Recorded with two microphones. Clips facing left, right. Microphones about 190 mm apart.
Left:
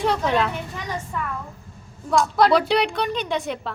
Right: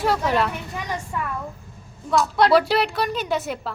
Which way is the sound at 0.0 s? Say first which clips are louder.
Even; 5° right (ahead or behind).